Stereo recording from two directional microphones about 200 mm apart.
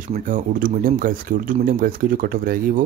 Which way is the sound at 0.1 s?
40° right (ahead or behind).